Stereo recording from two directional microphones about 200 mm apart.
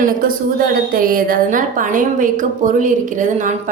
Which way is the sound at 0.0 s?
45° right (ahead or behind).